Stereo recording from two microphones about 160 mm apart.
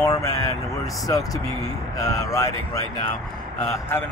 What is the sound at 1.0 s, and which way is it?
Speech, 20° left (ahead or behind).